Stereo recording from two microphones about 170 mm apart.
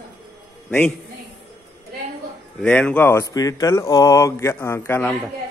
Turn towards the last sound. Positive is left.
turn(degrees=10)  # may be behind; listen again after turning